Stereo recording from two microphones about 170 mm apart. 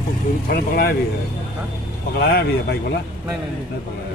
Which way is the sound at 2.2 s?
65° left (ahead or behind).